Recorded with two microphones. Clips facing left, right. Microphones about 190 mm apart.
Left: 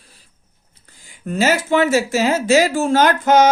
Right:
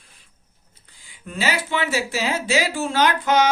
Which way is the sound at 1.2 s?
45° left (ahead or behind).